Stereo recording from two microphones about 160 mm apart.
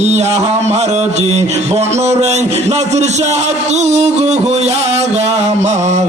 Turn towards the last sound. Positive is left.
turn(degrees=-45)  # may be behind; listen again after turning